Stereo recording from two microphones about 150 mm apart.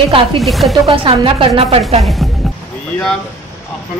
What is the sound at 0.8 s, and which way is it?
Speech, 35° right (ahead or behind).